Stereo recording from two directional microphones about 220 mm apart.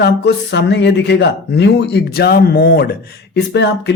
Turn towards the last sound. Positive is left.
turn(degrees=50)  # may be behind; listen again after turning